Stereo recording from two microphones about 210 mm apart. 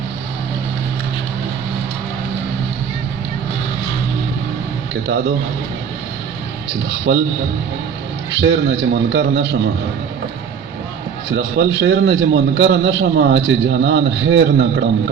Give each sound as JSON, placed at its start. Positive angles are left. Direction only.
{"t": 8.4, "sound": "a man's voice", "side_deg": -60}
{"t": 11.3, "sound": "a man's voice", "side_deg": -55}